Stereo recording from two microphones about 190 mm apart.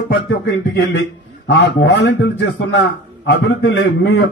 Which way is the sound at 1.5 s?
65° left (ahead or behind).